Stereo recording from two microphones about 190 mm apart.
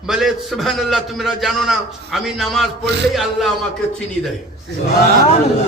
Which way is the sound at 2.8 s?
65° right (ahead or behind).